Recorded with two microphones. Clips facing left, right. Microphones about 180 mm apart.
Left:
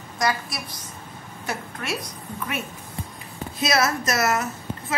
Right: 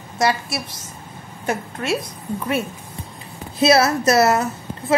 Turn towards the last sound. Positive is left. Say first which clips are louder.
# right 8 dB
turn(degrees=-30)  # may be behind; listen again after turning